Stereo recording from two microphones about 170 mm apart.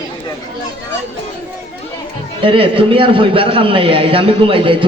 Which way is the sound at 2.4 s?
30° right (ahead or behind).